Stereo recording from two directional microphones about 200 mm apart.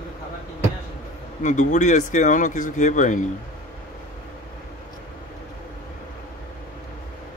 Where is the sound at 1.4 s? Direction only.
40° left (ahead or behind).